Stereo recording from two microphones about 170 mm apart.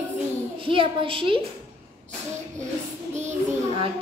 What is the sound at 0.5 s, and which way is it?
Speech, 30° right (ahead or behind).